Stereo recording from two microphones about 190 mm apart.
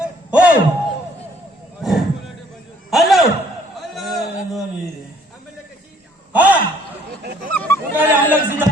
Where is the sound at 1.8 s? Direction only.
Centre (ahead or behind).